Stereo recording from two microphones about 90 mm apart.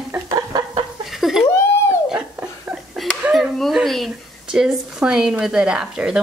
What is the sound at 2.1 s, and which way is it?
Laughter, 15° right (ahead or behind).